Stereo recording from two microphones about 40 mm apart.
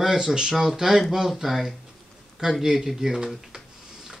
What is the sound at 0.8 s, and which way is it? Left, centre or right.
Speech, centre.